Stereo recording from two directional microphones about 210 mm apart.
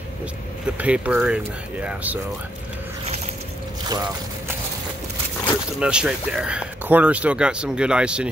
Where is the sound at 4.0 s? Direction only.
10° right (ahead or behind).